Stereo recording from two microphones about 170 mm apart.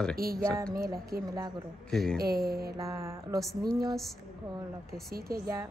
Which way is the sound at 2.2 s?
65° right (ahead or behind).